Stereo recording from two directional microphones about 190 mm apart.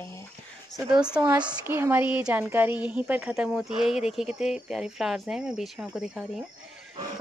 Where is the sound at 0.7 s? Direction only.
5° right (ahead or behind).